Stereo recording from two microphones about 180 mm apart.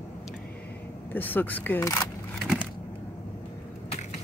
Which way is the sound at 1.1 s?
10° left (ahead or behind).